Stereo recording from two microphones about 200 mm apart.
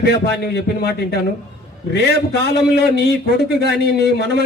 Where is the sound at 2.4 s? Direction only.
55° left (ahead or behind).